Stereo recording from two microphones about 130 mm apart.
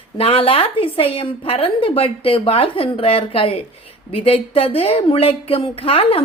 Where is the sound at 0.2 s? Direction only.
50° left (ahead or behind).